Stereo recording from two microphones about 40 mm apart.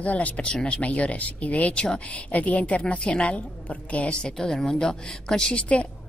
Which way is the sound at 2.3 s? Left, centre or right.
Left.